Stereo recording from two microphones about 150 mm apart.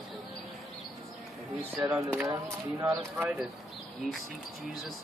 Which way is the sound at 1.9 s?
5° right (ahead or behind).